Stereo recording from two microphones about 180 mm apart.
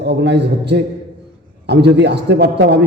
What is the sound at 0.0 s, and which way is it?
A man's voice, 70° right (ahead or behind).